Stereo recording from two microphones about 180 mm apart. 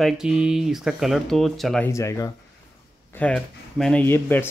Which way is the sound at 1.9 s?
15° left (ahead or behind).